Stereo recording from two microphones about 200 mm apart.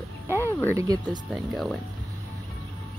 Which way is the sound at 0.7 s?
20° right (ahead or behind).